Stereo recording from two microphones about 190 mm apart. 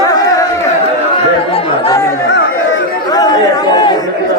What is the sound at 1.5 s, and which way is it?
Chatter, 30° left (ahead or behind).